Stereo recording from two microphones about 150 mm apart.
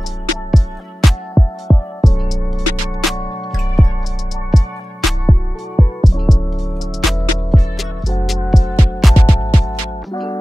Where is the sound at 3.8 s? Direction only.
Centre (ahead or behind).